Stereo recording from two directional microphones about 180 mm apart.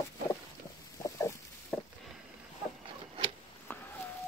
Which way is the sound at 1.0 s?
15° left (ahead or behind).